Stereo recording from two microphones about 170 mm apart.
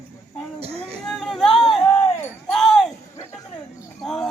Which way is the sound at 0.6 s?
35° right (ahead or behind).